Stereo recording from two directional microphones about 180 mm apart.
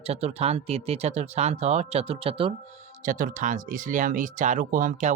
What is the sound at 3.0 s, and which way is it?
Speech, 45° right (ahead or behind).